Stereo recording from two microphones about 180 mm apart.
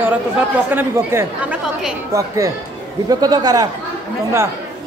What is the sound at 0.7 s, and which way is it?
Speech, 15° right (ahead or behind).